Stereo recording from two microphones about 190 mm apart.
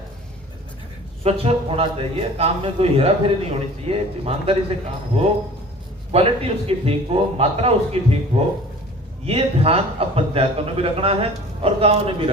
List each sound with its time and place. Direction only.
1.2 s a man's voice: 35° right (ahead or behind)
9.2 s a man's voice: 30° right (ahead or behind)